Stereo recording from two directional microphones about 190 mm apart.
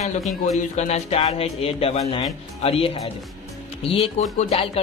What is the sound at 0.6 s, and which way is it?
Speech, 35° left (ahead or behind).